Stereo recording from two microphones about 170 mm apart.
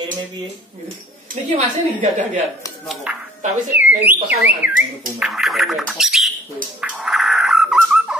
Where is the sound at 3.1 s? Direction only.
10° right (ahead or behind).